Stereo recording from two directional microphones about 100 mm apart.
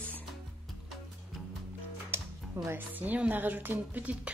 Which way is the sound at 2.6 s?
20° right (ahead or behind).